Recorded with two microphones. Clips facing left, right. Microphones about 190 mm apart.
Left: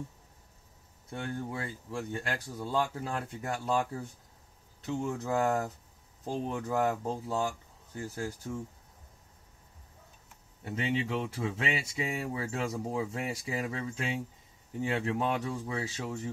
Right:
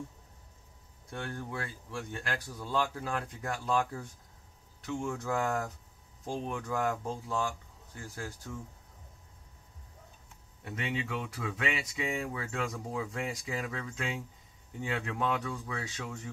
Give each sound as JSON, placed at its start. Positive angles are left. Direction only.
{"t": 1.1, "sound": "speech", "side_deg": 20}
{"t": 4.8, "sound": "speech", "side_deg": 20}
{"t": 10.6, "sound": "speech", "side_deg": 25}